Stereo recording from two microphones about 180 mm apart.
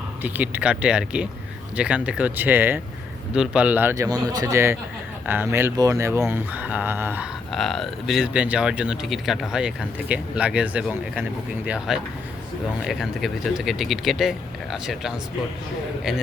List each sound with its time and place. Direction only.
0.2 s speech: 10° right (ahead or behind)
7.5 s speech: centre (ahead or behind)